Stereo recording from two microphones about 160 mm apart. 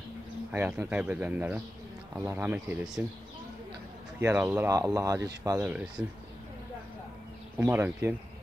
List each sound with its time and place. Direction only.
0.5 s speech: 10° right (ahead or behind)
4.2 s speech: 15° right (ahead or behind)
7.5 s speech: 15° right (ahead or behind)